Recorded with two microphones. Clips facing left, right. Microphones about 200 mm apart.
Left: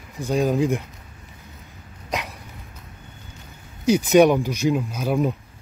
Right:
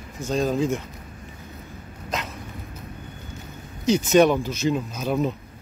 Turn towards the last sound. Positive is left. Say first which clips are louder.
# left 2 dB
turn(degrees=10)  # may be behind; listen again after turning